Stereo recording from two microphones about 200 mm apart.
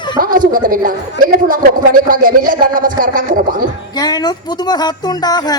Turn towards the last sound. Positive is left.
turn(degrees=20)  # may be behind; listen again after turning